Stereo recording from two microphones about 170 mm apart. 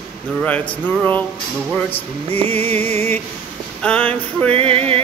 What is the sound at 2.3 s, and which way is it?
Music, 35° right (ahead or behind).